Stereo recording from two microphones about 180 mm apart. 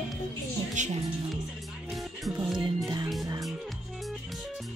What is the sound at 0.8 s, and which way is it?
Music, 45° right (ahead or behind).